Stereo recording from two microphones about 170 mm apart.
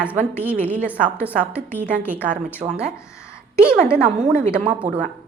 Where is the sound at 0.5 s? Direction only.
10° left (ahead or behind).